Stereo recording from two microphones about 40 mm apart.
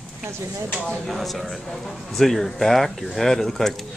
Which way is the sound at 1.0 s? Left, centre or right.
Centre.